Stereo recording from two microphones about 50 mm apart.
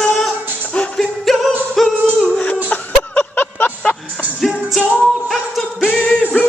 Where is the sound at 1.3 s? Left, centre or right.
Centre.